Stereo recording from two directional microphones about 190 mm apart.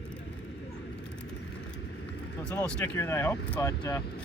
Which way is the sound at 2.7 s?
5° left (ahead or behind).